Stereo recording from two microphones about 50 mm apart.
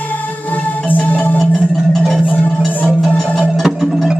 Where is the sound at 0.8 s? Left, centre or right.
Left.